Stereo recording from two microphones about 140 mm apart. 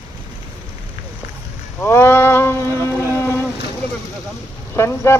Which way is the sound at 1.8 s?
15° left (ahead or behind).